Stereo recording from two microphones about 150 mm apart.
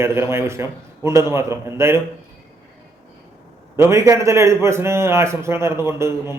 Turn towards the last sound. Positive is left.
turn(degrees=-15)  # may be behind; listen again after turning